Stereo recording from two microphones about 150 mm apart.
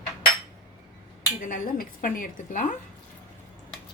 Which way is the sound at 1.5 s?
70° left (ahead or behind).